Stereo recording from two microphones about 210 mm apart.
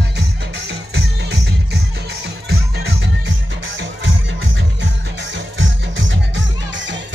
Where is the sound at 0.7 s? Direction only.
55° right (ahead or behind).